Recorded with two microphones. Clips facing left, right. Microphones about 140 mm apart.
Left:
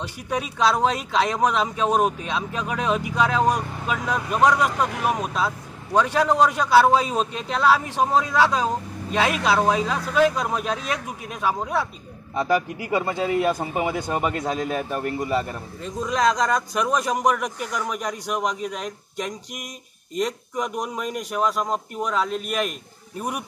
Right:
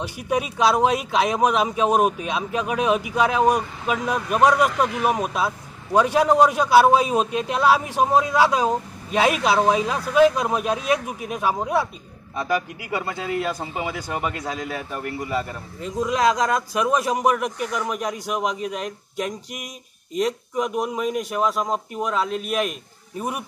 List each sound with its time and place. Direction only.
0.0 s speech: 10° right (ahead or behind)
12.4 s speech: 25° left (ahead or behind)
15.8 s a man's voice: 5° right (ahead or behind)